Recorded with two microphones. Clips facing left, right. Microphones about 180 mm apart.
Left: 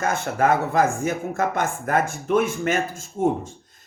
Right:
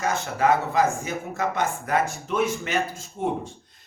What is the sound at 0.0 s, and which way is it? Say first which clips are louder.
A man's voice: left 2 dB; 50° left (ahead or behind).